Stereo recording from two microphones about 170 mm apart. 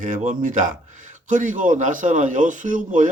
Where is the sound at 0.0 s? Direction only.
50° right (ahead or behind).